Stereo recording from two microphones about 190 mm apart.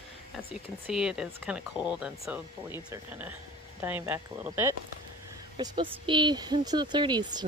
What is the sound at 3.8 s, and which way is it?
A woman's voice, 10° right (ahead or behind).